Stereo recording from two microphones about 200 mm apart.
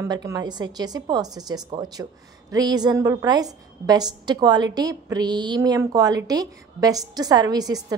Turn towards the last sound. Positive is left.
turn(degrees=-20)  # may be behind; listen again after turning